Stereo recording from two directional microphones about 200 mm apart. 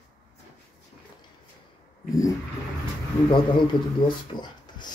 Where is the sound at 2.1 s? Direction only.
15° left (ahead or behind).